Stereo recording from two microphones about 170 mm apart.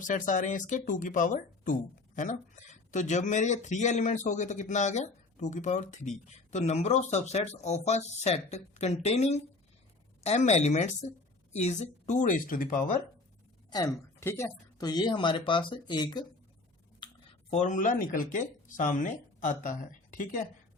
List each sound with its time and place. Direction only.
0.0 s speech: 50° left (ahead or behind)
13.7 s a woman's voice: 20° left (ahead or behind)
17.5 s speech: 45° left (ahead or behind)